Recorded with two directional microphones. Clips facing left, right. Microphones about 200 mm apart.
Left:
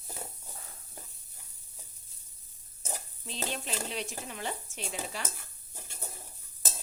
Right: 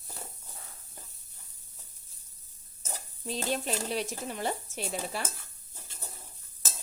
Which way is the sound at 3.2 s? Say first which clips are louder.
Right 7 dB; 45° right (ahead or behind).